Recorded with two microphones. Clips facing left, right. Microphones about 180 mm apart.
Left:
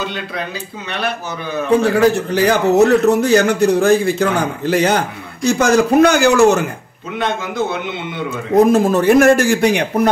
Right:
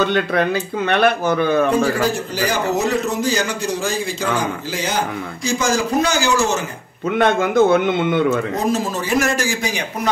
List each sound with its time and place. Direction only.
0.0 s speech: 60° right (ahead or behind)
1.8 s a man's voice: 65° left (ahead or behind)
7.2 s a man's voice: 50° right (ahead or behind)
8.5 s a man's voice: 55° left (ahead or behind)